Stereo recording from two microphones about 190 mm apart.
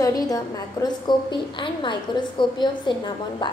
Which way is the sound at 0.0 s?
20° left (ahead or behind).